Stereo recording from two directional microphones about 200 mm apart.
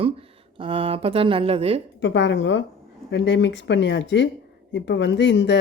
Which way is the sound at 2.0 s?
60° left (ahead or behind).